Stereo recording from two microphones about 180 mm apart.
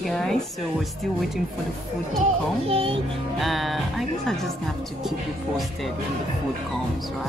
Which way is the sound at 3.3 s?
Centre (ahead or behind).